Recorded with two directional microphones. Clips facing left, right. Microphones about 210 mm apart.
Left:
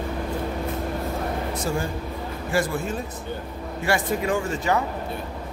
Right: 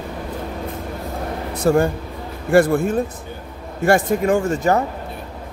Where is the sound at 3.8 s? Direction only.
45° right (ahead or behind).